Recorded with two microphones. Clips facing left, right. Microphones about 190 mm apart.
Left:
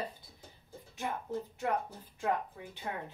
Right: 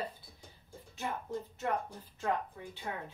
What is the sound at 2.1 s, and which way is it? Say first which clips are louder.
Speech: left 1 dB; 15° left (ahead or behind).